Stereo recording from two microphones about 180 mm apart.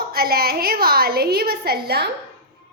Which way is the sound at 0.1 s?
60° right (ahead or behind).